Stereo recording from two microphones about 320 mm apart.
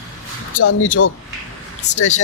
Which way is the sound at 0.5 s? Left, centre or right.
Left.